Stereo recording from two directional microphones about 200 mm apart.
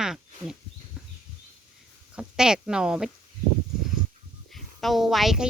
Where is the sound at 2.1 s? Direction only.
5° right (ahead or behind).